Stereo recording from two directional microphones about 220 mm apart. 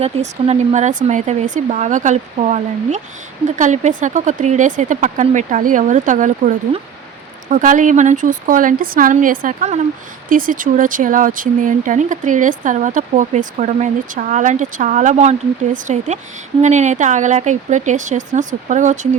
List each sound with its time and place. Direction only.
0.0 s speech: 30° right (ahead or behind)